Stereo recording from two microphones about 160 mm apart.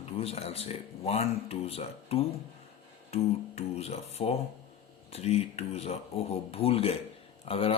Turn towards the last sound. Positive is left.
turn(degrees=35)  # may be behind; listen again after turning